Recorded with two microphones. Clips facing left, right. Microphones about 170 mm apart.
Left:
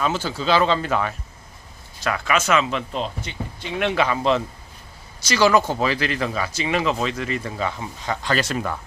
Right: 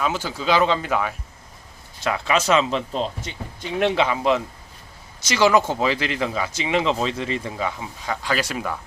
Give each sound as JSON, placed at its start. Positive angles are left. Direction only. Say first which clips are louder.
{"t": 0.0, "sound": "speech", "louder": "left 1 dB", "side_deg": -15}
{"t": 2.0, "sound": "speech", "louder": "right 1 dB", "side_deg": -25}
{"t": 3.9, "sound": "speech", "louder": "even", "side_deg": -20}
{"t": 7.5, "sound": "speech", "louder": "left 1 dB", "side_deg": -10}